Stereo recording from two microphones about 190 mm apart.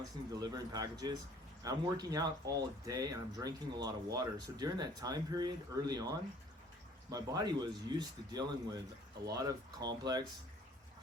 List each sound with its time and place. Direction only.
0.3 s speech: 20° right (ahead or behind)